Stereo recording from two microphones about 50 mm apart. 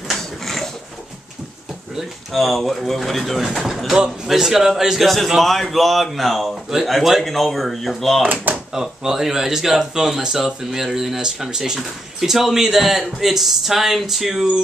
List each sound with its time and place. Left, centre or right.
0.1 s a sound: centre
2.0 s a man's voice: centre
8.5 s drawer open or close: right
9.0 s a man's voice: centre